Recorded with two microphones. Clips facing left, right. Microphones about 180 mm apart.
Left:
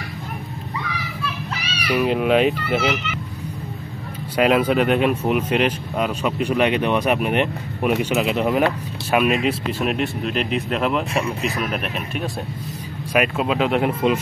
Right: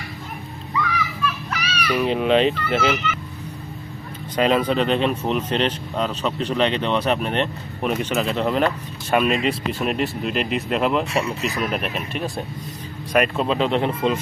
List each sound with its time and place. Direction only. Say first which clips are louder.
1.2 s children playing: right 2 dB; 30° left (ahead or behind)
1.9 s speech: left 1 dB; 5° left (ahead or behind)
4.4 s speech: left 2 dB; 10° left (ahead or behind)